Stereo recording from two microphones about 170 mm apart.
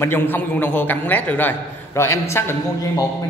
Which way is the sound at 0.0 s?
10° left (ahead or behind).